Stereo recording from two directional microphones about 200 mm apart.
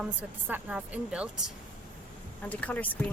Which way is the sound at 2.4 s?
5° left (ahead or behind).